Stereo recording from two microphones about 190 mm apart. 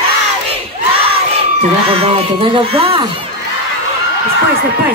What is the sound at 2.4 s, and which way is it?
Speech, 30° right (ahead or behind).